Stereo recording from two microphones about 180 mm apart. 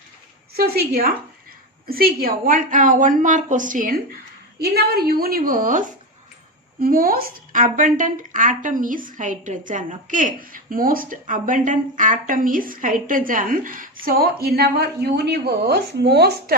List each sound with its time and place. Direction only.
0.5 s a woman's voice: 55° right (ahead or behind)
4.6 s a woman's voice: 60° right (ahead or behind)